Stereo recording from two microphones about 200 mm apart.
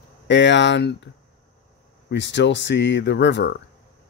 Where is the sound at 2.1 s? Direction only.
60° left (ahead or behind).